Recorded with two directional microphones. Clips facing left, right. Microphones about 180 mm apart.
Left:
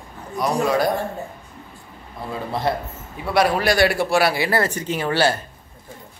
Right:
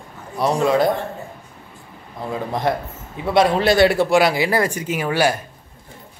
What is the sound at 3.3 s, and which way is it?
A man's voice, 25° right (ahead or behind).